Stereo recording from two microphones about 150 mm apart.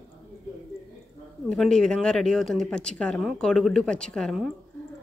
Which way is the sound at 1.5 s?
5° left (ahead or behind).